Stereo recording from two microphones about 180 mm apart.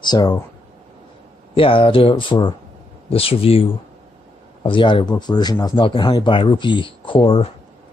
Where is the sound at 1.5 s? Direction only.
30° left (ahead or behind).